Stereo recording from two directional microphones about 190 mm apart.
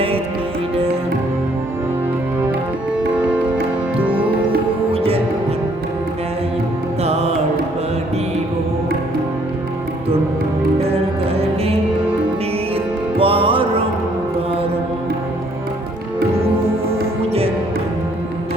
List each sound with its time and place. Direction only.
4.0 s music: 10° right (ahead or behind)
4.9 s music: 30° right (ahead or behind)
7.0 s music: 35° right (ahead or behind)
12.7 s music: 30° right (ahead or behind)
16.9 s music: 30° right (ahead or behind)